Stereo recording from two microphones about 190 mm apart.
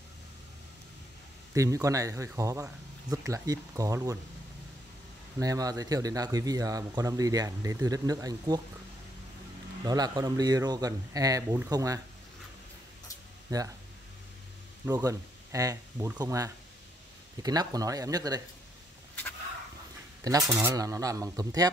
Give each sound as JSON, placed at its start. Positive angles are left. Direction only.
{"t": 1.5, "sound": "speech", "side_deg": -15}
{"t": 5.4, "sound": "speech", "side_deg": -20}
{"t": 9.8, "sound": "speech", "side_deg": -20}
{"t": 13.5, "sound": "speech", "side_deg": -20}
{"t": 14.9, "sound": "speech", "side_deg": -15}
{"t": 20.2, "sound": "speech", "side_deg": -15}